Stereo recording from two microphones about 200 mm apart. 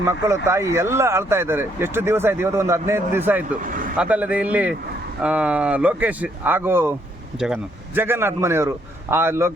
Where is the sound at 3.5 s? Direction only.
40° right (ahead or behind).